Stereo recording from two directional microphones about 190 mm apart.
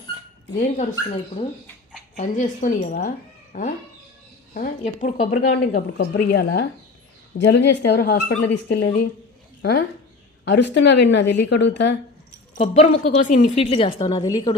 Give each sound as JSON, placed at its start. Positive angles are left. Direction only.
{"t": 0.6, "sound": "a woman's voice", "side_deg": 40}
{"t": 9.6, "sound": "a woman's voice", "side_deg": 60}
{"t": 12.5, "sound": "a woman's voice", "side_deg": 35}